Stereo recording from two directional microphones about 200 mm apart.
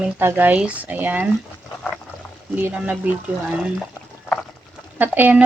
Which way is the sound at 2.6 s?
10° right (ahead or behind).